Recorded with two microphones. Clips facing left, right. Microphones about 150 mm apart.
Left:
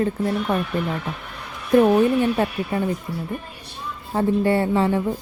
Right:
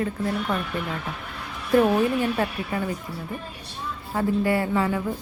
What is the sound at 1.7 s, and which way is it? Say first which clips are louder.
Speech: left 4 dB; 15° left (ahead or behind).